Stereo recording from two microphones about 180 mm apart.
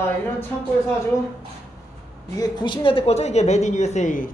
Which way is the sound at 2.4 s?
25° left (ahead or behind).